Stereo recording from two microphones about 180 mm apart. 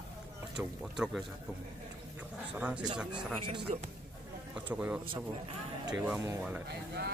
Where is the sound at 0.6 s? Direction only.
5° right (ahead or behind).